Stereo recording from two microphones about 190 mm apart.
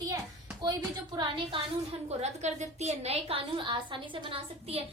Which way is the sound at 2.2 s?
35° right (ahead or behind).